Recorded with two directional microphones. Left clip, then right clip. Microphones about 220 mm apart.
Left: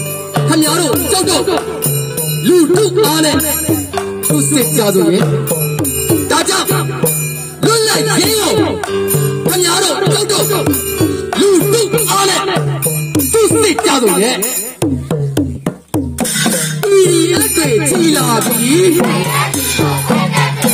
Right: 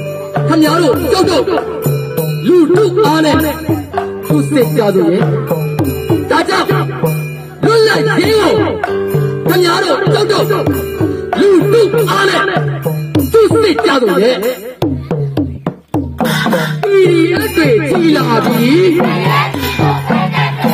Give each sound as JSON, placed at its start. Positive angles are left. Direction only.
{"t": 0.5, "sound": "music", "side_deg": 30}
{"t": 8.8, "sound": "music", "side_deg": 40}
{"t": 9.5, "sound": "music", "side_deg": 30}
{"t": 16.2, "sound": "music", "side_deg": 50}
{"t": 17.0, "sound": "music", "side_deg": 30}